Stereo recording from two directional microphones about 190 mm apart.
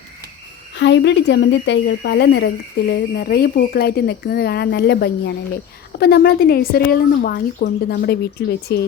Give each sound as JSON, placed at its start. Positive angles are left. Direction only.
{"t": 0.8, "sound": "a woman's voice", "side_deg": 65}